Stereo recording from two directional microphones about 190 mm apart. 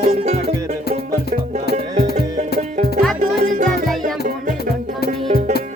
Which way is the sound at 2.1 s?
40° right (ahead or behind).